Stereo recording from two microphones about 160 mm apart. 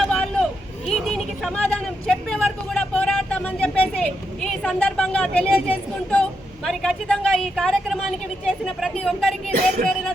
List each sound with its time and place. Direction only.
0.0 s a sound: 5° left (ahead or behind)
0.9 s vehicle: 5° left (ahead or behind)
5.6 s a woman's voice: 10° left (ahead or behind)
9.6 s music: 55° right (ahead or behind)